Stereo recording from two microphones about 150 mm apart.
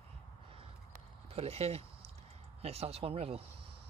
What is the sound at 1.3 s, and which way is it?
Speech, 45° right (ahead or behind).